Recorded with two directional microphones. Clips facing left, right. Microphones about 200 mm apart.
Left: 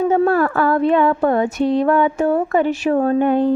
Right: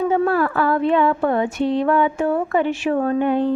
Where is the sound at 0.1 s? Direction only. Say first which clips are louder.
Left 3 dB; 45° left (ahead or behind).